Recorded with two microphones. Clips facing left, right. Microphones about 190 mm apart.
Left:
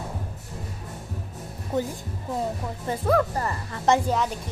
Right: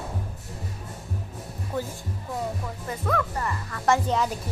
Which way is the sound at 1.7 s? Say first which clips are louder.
Left 4 dB; 20° left (ahead or behind).